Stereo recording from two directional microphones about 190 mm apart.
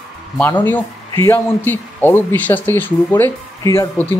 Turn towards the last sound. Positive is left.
turn(degrees=15)  # may be behind; listen again after turning